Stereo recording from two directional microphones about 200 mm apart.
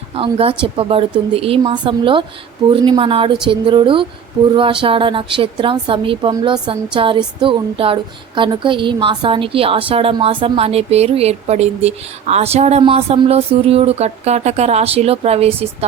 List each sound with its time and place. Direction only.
0.1 s a woman's voice: 30° right (ahead or behind)